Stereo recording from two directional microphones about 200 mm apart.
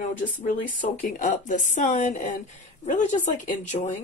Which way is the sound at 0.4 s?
40° left (ahead or behind).